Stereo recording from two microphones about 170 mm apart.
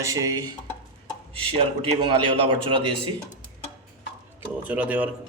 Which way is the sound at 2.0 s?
30° right (ahead or behind).